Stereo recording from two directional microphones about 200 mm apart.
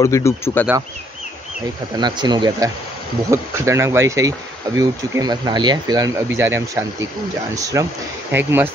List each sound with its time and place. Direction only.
0.0 s speech: 15° left (ahead or behind)
2.0 s speech: 20° right (ahead or behind)